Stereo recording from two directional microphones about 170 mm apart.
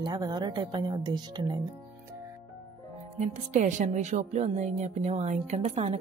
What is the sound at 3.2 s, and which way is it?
Speech, 45° right (ahead or behind).